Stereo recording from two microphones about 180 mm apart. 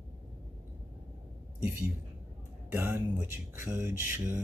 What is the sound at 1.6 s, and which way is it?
Speech, 10° right (ahead or behind).